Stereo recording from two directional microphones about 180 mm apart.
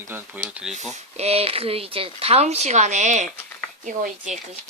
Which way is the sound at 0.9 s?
35° right (ahead or behind).